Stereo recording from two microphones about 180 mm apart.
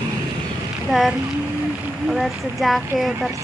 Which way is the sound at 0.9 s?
Centre (ahead or behind).